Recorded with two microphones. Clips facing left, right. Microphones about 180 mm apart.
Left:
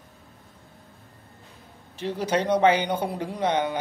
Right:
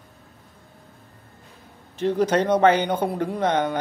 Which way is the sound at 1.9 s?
50° right (ahead or behind).